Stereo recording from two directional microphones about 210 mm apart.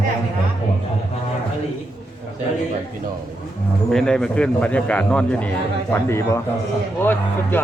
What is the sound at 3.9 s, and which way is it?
A man's voice, 5° left (ahead or behind).